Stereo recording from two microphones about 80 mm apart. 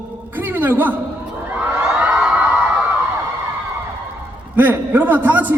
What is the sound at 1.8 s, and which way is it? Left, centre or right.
Crowd, centre.